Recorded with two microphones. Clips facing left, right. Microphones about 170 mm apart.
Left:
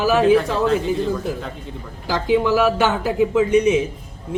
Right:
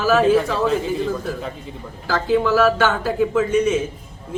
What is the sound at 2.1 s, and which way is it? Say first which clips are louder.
Speech: even; 15° left (ahead or behind).